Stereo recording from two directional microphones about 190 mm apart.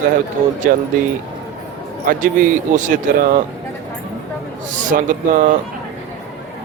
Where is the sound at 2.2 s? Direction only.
45° right (ahead or behind).